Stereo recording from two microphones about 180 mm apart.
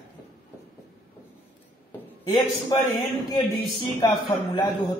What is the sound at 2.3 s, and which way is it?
A man's voice, 25° left (ahead or behind).